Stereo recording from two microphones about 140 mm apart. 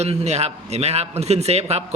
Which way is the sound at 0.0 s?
50° right (ahead or behind).